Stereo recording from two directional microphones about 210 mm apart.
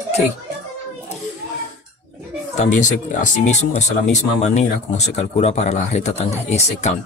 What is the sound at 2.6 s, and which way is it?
Speech, 35° left (ahead or behind).